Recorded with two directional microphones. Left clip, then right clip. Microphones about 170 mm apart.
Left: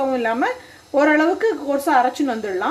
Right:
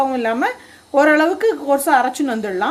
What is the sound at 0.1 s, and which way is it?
Speech, 25° right (ahead or behind).